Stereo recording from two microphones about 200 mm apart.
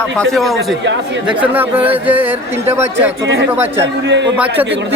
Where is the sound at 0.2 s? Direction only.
Centre (ahead or behind).